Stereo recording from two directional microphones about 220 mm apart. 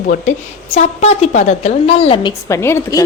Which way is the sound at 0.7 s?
30° left (ahead or behind).